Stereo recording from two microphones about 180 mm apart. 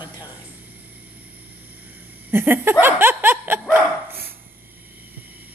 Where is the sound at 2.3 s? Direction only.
10° right (ahead or behind).